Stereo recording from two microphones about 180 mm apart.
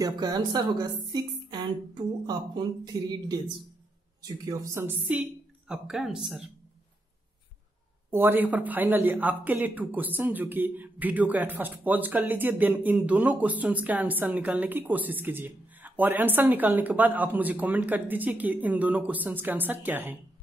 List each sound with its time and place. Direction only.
0.0 s a woman's voice: 20° right (ahead or behind); by 6.4 s centre (ahead or behind)
8.1 s speech: 10° right (ahead or behind)